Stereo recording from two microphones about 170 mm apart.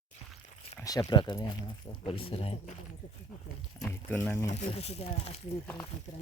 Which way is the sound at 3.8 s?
10° left (ahead or behind).